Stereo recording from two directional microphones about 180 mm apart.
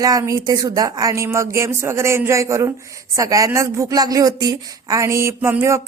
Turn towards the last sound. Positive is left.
turn(degrees=-15)  # may be behind; listen again after turning